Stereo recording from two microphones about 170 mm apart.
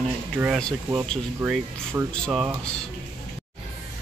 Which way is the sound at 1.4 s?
20° right (ahead or behind).